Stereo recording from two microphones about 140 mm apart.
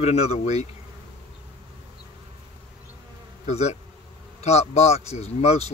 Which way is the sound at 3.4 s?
50° left (ahead or behind).